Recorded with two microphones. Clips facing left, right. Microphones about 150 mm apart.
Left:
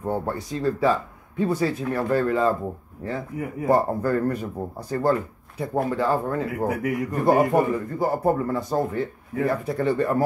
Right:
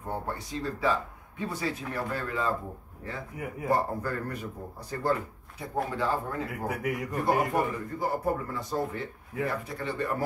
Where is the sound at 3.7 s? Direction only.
45° left (ahead or behind).